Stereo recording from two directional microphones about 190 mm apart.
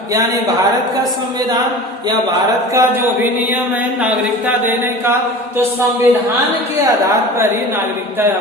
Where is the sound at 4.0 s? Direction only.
10° right (ahead or behind).